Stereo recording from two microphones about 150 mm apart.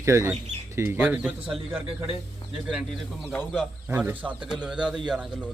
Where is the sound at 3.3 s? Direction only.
Centre (ahead or behind).